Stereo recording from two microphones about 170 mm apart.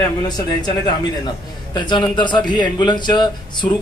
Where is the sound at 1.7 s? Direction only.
25° left (ahead or behind).